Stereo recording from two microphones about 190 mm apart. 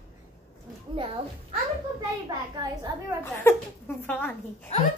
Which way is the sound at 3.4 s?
10° left (ahead or behind).